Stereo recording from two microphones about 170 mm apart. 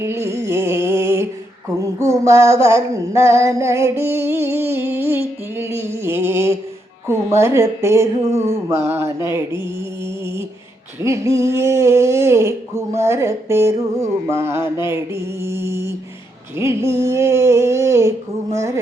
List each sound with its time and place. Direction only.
0.0 s music: 15° right (ahead or behind)
2.0 s female singing: 15° right (ahead or behind)
11.0 s female singing: 15° right (ahead or behind)